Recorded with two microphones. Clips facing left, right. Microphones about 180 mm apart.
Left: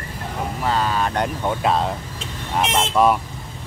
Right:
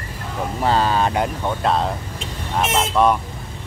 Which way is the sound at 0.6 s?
35° right (ahead or behind).